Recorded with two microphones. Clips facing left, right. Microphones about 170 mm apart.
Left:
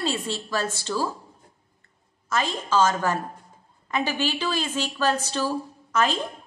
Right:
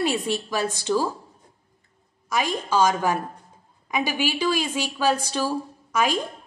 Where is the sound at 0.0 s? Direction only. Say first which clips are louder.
Right 4 dB; 15° right (ahead or behind).